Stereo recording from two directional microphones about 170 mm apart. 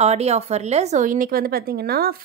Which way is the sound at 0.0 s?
40° right (ahead or behind).